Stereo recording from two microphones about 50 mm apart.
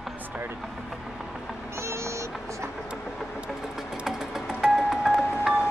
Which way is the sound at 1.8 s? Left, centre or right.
Right.